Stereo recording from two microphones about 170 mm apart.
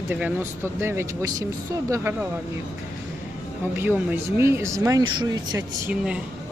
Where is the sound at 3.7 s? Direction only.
10° right (ahead or behind).